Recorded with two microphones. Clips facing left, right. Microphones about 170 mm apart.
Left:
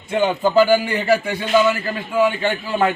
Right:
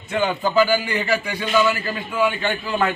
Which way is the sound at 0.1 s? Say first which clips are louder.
Left 4 dB; 25° left (ahead or behind).